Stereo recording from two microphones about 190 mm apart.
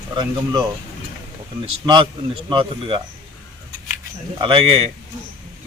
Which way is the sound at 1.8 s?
25° right (ahead or behind).